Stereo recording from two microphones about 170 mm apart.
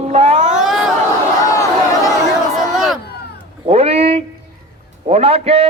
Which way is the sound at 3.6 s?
35° right (ahead or behind).